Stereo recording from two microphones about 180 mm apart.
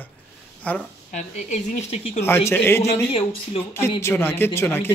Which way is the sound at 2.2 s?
15° left (ahead or behind).